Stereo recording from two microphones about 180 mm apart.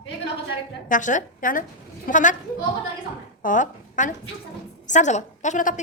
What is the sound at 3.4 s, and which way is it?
A woman's voice, 45° left (ahead or behind).